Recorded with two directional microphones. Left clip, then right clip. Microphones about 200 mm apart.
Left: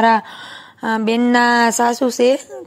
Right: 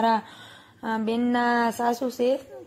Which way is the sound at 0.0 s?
25° left (ahead or behind).